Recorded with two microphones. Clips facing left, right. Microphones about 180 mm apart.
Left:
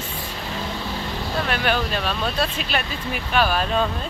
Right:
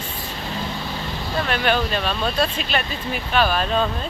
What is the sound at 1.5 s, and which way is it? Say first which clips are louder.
Speech: right 3 dB; 5° left (ahead or behind).